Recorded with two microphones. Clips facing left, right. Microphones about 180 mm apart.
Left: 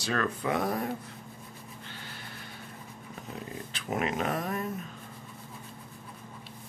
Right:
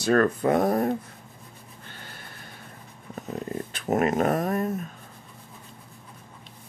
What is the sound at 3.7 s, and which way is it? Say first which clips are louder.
Speech: right 8 dB; 45° right (ahead or behind).